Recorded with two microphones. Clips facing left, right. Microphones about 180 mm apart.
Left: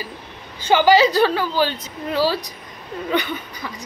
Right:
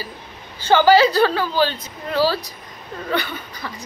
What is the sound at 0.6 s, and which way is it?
A woman's voice, 15° left (ahead or behind).